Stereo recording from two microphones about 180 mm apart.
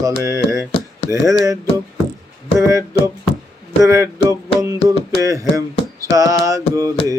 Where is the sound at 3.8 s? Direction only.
15° right (ahead or behind).